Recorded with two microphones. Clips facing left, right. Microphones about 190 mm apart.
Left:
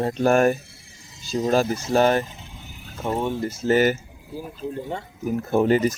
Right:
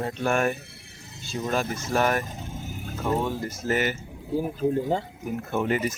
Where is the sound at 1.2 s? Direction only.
35° left (ahead or behind).